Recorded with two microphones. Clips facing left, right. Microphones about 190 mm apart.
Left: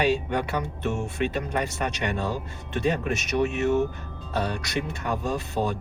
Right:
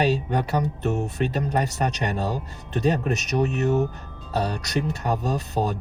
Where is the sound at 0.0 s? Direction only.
35° right (ahead or behind).